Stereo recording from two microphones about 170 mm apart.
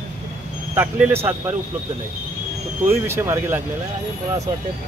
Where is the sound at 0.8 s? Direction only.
10° right (ahead or behind).